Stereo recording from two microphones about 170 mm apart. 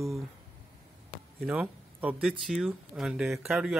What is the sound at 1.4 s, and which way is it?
Speech, 5° right (ahead or behind).